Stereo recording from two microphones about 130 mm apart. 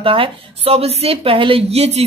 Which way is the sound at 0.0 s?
45° right (ahead or behind).